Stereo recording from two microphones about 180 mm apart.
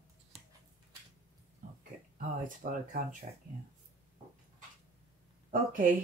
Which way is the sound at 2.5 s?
50° right (ahead or behind).